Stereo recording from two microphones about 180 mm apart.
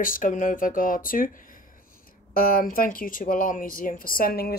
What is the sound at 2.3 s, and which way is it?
Speech, 55° left (ahead or behind).